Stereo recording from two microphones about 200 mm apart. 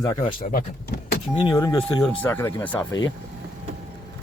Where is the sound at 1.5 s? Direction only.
15° left (ahead or behind).